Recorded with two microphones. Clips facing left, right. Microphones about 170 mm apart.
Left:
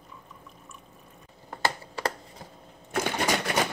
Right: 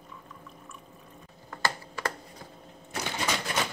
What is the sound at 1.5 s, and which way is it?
Computer keyboard, 30° left (ahead or behind).